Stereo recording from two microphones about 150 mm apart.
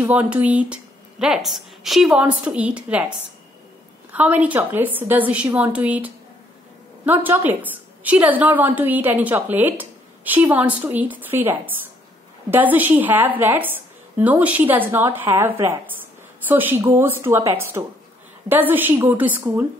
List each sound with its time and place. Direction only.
0.0 s a woman's voice: 10° right (ahead or behind)
4.1 s a woman's voice: 10° right (ahead or behind)